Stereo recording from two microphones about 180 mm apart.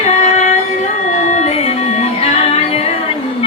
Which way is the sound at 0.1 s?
40° left (ahead or behind).